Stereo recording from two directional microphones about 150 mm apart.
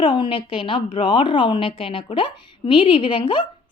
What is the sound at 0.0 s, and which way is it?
A woman's voice, 35° left (ahead or behind).